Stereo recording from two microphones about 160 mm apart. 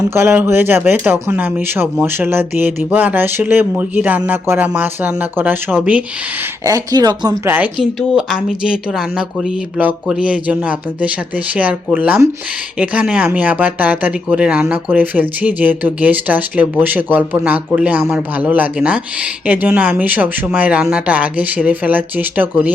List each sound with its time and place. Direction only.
0.1 s speech: 15° right (ahead or behind)
6.7 s speech: 20° right (ahead or behind)
7.4 s speech: 10° right (ahead or behind)